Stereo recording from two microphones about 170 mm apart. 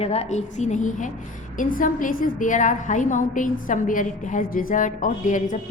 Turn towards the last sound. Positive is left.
turn(degrees=50)  # may be behind; listen again after turning